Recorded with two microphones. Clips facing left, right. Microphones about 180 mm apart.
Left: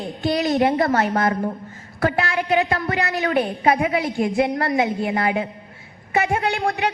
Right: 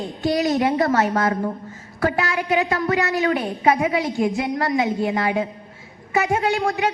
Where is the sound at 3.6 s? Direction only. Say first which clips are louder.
Even; 55° left (ahead or behind).